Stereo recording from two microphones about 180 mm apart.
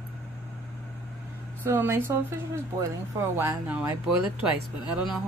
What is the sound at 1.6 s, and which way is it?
Speech, 15° right (ahead or behind).